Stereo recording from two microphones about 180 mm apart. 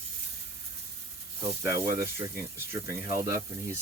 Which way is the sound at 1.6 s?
20° right (ahead or behind).